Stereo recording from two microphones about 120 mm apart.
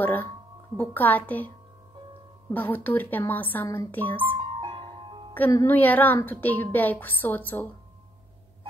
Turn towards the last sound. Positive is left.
turn(degrees=15)  # may be behind; listen again after turning